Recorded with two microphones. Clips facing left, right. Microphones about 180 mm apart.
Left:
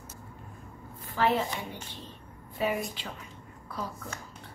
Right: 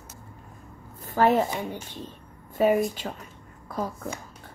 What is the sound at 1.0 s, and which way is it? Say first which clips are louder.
Speech: right 6 dB; 45° right (ahead or behind).